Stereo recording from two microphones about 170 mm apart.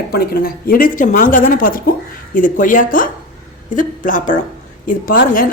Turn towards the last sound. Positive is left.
turn(degrees=55)  # may be behind; listen again after turning